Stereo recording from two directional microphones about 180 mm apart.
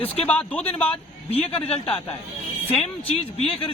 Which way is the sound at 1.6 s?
35° left (ahead or behind).